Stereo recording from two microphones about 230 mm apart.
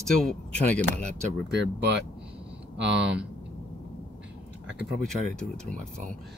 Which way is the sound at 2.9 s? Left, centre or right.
Centre.